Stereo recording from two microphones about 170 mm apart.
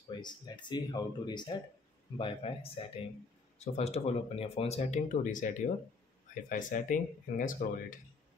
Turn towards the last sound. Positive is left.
turn(degrees=50)  # may be behind; listen again after turning